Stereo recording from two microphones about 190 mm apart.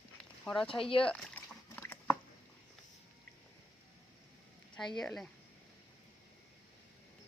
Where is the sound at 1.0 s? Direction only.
5° left (ahead or behind).